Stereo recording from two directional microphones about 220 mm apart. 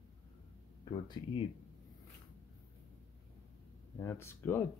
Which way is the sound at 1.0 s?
20° left (ahead or behind).